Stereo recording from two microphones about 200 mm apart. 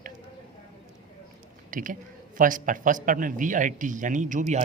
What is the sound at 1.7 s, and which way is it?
A man's voice, 40° right (ahead or behind).